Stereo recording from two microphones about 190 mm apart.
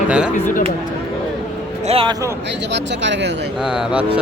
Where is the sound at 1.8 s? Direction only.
30° right (ahead or behind).